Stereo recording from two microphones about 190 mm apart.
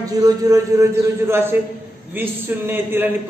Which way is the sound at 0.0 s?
20° right (ahead or behind).